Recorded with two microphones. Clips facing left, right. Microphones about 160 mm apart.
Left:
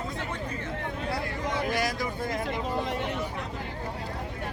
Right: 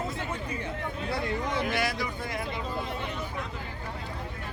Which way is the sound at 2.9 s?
75° left (ahead or behind).